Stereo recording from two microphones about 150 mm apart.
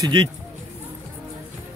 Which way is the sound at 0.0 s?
25° right (ahead or behind).